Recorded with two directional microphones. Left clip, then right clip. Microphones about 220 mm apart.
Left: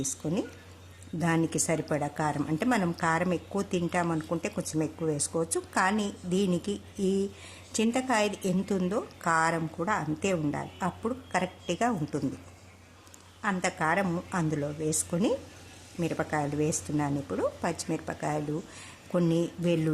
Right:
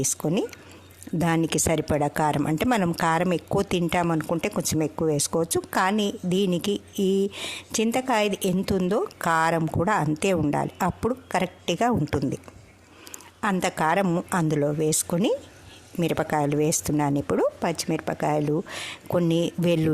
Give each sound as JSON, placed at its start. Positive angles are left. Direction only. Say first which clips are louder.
{"t": 0.0, "sound": "speech", "louder": "right 7 dB", "side_deg": -45}
{"t": 13.4, "sound": "speech", "louder": "right 5 dB", "side_deg": -45}